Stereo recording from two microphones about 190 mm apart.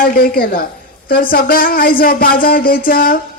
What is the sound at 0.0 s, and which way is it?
A woman's voice, 50° left (ahead or behind).